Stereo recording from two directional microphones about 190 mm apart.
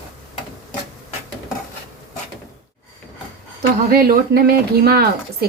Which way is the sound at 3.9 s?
50° right (ahead or behind).